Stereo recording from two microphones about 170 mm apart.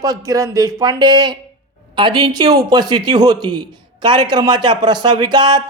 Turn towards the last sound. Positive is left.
turn(degrees=-25)  # may be behind; listen again after turning